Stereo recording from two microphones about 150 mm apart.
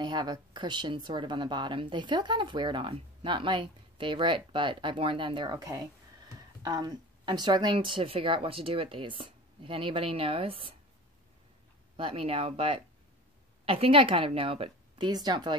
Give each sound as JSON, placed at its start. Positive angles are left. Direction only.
{"t": 0.0, "sound": "speech", "side_deg": -30}
{"t": 12.0, "sound": "speech", "side_deg": -40}